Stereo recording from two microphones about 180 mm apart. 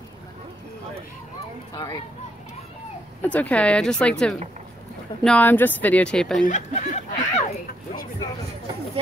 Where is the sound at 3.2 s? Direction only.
10° left (ahead or behind).